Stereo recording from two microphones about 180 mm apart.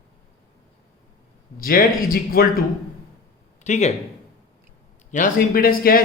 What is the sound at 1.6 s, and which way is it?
Speech, 55° left (ahead or behind).